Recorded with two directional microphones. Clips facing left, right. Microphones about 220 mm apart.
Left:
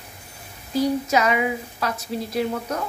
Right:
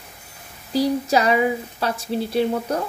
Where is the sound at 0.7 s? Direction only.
35° right (ahead or behind).